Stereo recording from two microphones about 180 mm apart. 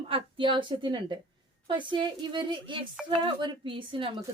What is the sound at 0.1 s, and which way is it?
Speech, 30° right (ahead or behind).